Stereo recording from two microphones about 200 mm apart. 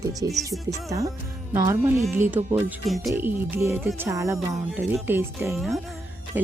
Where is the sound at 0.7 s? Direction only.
15° right (ahead or behind).